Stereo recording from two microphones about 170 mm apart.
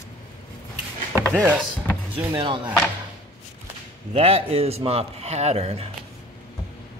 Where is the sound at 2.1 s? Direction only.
30° right (ahead or behind).